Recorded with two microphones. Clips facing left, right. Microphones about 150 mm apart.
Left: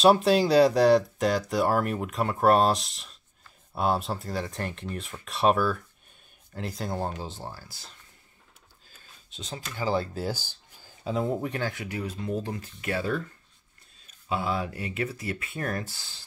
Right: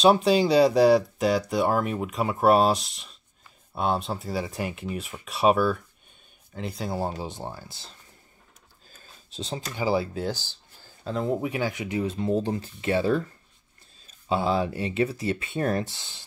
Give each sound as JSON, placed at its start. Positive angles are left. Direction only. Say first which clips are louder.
{"t": 0.0, "sound": "speech", "louder": "right 1 dB", "side_deg": 0}
{"t": 8.9, "sound": "a sound", "louder": "right 7 dB", "side_deg": -35}
{"t": 9.8, "sound": "speech", "louder": "right 2 dB", "side_deg": -10}
{"t": 10.1, "sound": "speech", "louder": "right 2 dB", "side_deg": 10}